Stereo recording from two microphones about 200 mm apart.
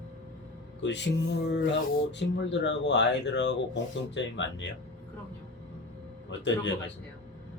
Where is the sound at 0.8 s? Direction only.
60° left (ahead or behind).